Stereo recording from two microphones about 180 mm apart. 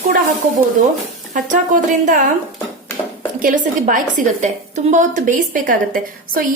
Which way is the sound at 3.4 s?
50° right (ahead or behind).